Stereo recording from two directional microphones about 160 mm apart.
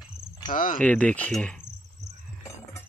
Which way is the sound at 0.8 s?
10° left (ahead or behind).